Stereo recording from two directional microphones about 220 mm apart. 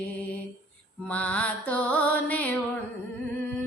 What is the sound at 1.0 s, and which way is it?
Music, 5° left (ahead or behind).